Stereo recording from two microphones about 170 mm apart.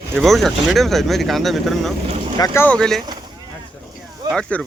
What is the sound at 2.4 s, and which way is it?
Speech, 15° left (ahead or behind).